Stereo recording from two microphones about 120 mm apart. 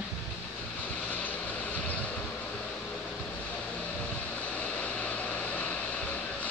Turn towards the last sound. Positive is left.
turn(degrees=10)  # may be behind; listen again after turning